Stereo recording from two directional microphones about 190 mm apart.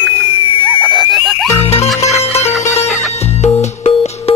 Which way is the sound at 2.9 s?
Centre (ahead or behind).